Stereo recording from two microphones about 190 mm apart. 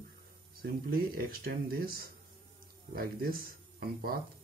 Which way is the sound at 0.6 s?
55° right (ahead or behind).